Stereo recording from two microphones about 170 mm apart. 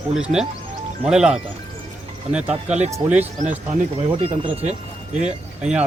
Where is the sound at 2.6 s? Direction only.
40° right (ahead or behind).